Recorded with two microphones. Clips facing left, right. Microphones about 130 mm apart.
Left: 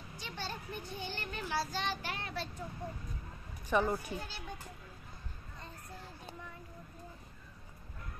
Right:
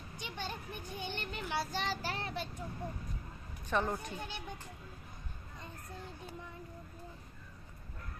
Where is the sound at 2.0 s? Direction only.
35° right (ahead or behind).